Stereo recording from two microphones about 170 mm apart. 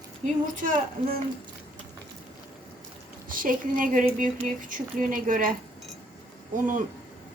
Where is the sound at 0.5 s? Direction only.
50° right (ahead or behind).